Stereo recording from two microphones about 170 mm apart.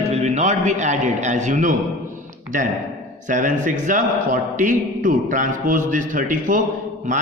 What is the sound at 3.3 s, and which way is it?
A man's voice, 50° right (ahead or behind).